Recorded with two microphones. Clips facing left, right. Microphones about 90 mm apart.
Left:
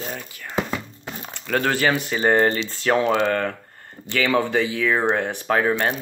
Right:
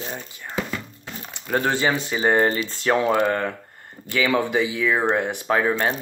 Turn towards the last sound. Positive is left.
turn(degrees=-20)  # may be behind; listen again after turning